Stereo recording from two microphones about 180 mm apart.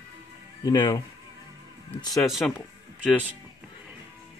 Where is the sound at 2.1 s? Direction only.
Centre (ahead or behind).